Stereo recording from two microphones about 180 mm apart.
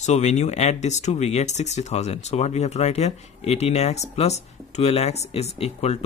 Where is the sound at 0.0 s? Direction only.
40° left (ahead or behind).